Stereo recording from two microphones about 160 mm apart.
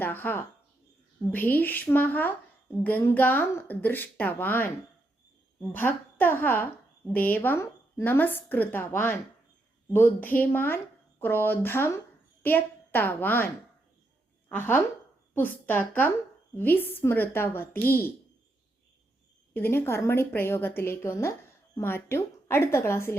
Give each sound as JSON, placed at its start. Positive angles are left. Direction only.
{"t": 0.0, "sound": "a woman's voice", "side_deg": 10}
{"t": 5.7, "sound": "a woman's voice", "side_deg": 10}
{"t": 14.5, "sound": "a woman's voice", "side_deg": 10}
{"t": 19.5, "sound": "a woman's voice", "side_deg": 15}